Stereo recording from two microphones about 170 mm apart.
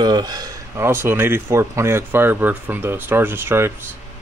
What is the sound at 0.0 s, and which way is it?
Speech, 25° right (ahead or behind).